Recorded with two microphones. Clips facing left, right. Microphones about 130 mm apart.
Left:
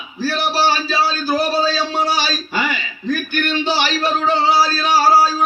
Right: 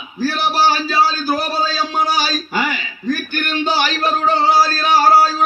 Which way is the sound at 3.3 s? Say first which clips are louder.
Left 1 dB; 45° right (ahead or behind).